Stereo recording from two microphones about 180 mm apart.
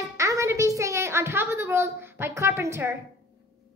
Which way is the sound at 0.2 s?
15° right (ahead or behind).